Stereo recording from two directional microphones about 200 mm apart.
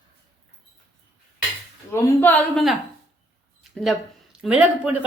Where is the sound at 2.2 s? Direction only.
10° left (ahead or behind).